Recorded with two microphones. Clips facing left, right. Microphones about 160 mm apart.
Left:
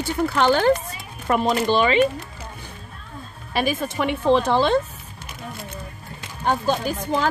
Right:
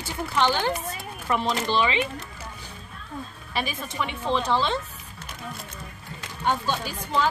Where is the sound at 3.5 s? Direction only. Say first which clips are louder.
Left 7 dB; 50° left (ahead or behind).